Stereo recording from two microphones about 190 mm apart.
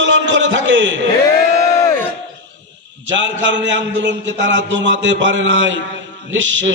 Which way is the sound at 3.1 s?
75° right (ahead or behind).